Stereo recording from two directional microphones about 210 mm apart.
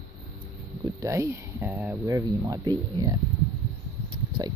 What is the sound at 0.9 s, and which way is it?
Speech, 15° right (ahead or behind).